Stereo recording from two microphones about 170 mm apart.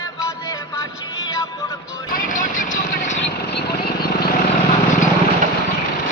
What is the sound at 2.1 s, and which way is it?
Vehicle, 50° left (ahead or behind).